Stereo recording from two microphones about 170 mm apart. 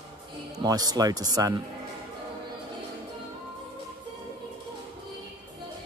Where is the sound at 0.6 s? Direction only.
20° right (ahead or behind).